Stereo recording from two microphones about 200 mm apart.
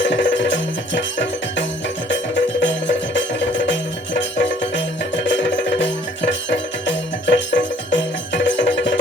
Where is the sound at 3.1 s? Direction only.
65° left (ahead or behind).